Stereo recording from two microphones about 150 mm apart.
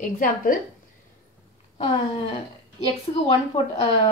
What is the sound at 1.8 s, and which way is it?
A woman's voice, 35° left (ahead or behind).